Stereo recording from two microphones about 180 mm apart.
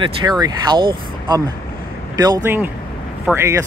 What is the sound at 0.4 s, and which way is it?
Speech, 20° right (ahead or behind).